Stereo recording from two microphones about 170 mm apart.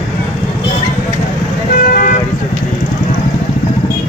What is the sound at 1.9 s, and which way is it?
Vehicle, 55° left (ahead or behind).